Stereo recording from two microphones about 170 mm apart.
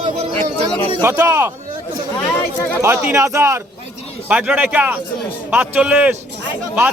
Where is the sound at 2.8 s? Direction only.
15° right (ahead or behind).